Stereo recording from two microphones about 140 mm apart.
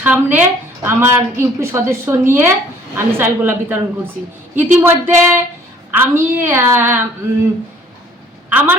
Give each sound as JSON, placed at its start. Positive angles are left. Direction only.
{"t": 0.0, "sound": "a woman's voice", "side_deg": -15}
{"t": 8.5, "sound": "a woman's voice", "side_deg": -10}